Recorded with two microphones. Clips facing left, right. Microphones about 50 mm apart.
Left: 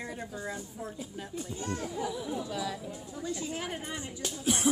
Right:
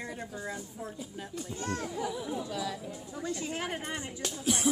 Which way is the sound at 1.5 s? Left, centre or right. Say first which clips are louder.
Right 1 dB; right.